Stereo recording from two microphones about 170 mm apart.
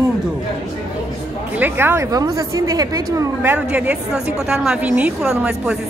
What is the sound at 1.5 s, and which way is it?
A woman's voice, 10° right (ahead or behind).